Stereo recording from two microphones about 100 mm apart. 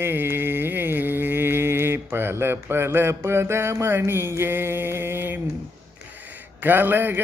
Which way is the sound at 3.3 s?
25° right (ahead or behind).